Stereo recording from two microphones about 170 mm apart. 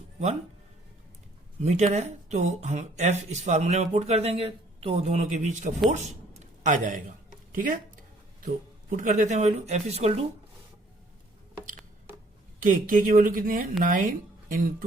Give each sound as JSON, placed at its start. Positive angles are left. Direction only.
{"t": 1.6, "sound": "speech", "side_deg": -45}
{"t": 5.9, "sound": "a sound", "side_deg": -45}
{"t": 7.5, "sound": "speech", "side_deg": -50}
{"t": 9.0, "sound": "speech", "side_deg": -45}
{"t": 12.5, "sound": "speech", "side_deg": -50}